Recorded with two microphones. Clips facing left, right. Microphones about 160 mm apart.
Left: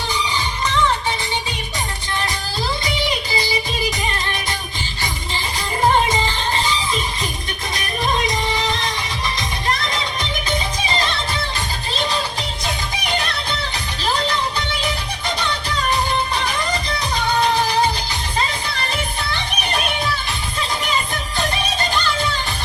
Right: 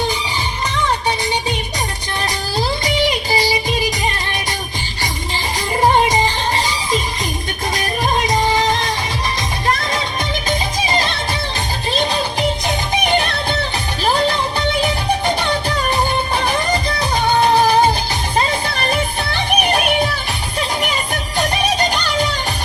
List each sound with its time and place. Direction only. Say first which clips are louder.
5.8 s music: right 3 dB; 35° right (ahead or behind)
7.8 s music: right 2 dB; 40° right (ahead or behind)
14.3 s music: right 4 dB; 50° right (ahead or behind)